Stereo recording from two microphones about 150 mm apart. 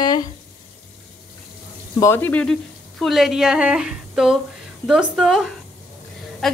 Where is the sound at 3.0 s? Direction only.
Centre (ahead or behind).